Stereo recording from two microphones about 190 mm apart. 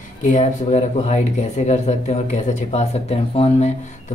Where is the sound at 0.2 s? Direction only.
40° left (ahead or behind).